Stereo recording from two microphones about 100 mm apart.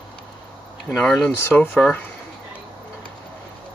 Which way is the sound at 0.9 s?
5° left (ahead or behind).